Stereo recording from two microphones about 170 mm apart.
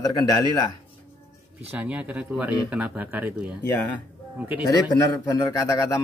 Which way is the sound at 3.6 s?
10° left (ahead or behind).